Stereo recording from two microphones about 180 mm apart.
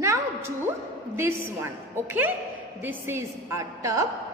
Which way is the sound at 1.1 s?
10° right (ahead or behind).